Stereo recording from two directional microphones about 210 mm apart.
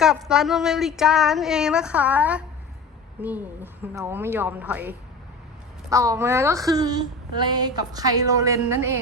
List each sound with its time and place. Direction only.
0.0 s a woman's voice: 5° right (ahead or behind)